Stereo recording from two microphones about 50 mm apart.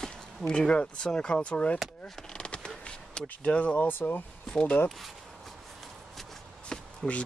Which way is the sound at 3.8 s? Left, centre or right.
Left.